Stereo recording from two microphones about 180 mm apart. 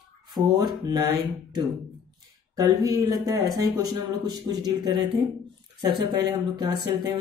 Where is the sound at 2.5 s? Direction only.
20° right (ahead or behind).